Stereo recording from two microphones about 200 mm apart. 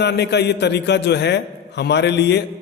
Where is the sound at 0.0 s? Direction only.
55° left (ahead or behind).